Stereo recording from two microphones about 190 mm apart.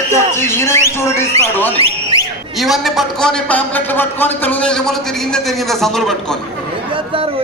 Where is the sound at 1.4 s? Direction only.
35° right (ahead or behind).